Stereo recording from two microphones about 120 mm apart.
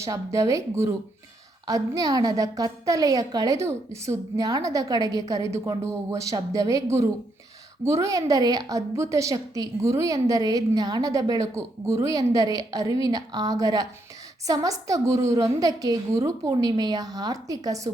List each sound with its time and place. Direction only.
0.0 s a woman's voice: 25° right (ahead or behind)